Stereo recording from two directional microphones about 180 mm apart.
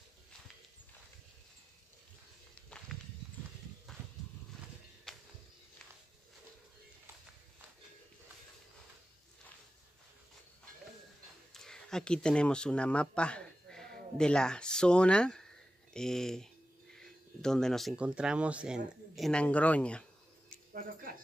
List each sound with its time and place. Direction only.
5.1 s a sound: centre (ahead or behind)
11.5 s speech: 5° left (ahead or behind)
20.7 s cricket: 50° right (ahead or behind)